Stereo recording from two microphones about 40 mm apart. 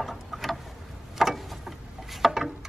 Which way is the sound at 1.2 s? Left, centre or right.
Centre.